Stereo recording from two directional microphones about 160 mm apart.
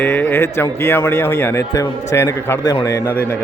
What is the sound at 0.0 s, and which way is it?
Speech, 10° left (ahead or behind).